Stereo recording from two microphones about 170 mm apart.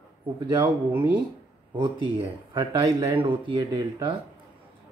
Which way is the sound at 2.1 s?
25° right (ahead or behind).